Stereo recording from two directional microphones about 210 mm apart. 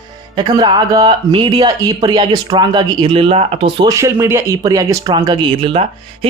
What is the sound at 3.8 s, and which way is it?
Speech, 15° right (ahead or behind).